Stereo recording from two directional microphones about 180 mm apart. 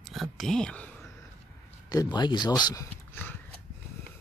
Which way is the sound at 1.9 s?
20° left (ahead or behind).